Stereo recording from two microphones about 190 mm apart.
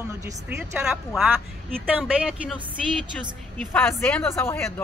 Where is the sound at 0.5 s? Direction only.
5° right (ahead or behind).